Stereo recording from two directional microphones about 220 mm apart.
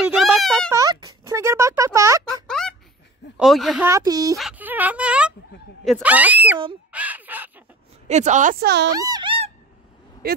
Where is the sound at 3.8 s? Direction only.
10° right (ahead or behind).